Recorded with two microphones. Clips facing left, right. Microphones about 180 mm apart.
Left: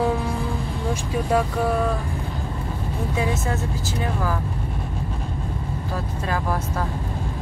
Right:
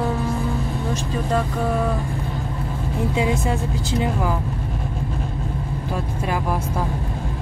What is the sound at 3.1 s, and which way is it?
Speech, 15° right (ahead or behind).